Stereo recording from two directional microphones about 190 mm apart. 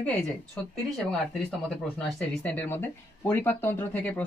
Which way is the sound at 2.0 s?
5° left (ahead or behind).